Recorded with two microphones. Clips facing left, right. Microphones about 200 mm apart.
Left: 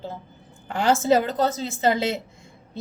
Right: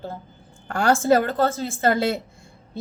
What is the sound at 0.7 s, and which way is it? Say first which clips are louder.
Speech: right 1 dB; 20° left (ahead or behind).